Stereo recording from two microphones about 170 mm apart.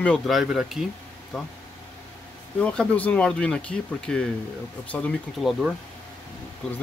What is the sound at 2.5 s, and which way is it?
Speech, 5° left (ahead or behind).